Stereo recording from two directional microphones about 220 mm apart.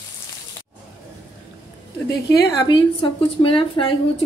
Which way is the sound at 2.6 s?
20° left (ahead or behind).